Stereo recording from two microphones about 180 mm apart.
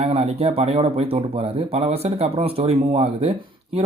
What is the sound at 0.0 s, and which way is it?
Speech, 35° right (ahead or behind).